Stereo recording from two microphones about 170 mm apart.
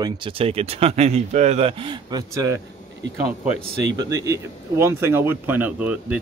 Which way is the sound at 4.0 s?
20° right (ahead or behind).